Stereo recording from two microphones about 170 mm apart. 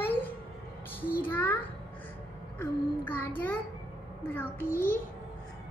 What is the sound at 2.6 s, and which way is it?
A child's voice, 10° left (ahead or behind).